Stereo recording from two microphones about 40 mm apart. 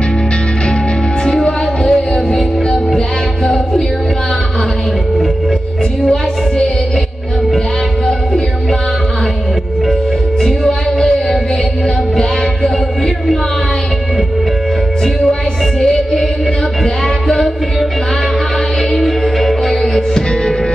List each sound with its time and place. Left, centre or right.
1.2 s music: centre
2.3 s music: centre
10.4 s music: centre
15.8 s music: centre
18.9 s music: centre